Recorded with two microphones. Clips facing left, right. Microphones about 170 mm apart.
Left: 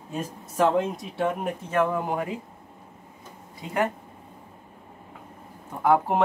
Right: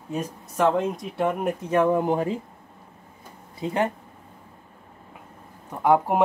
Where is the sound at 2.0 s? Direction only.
30° right (ahead or behind).